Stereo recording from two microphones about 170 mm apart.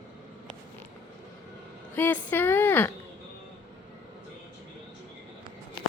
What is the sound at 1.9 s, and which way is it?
A woman's voice, 10° left (ahead or behind).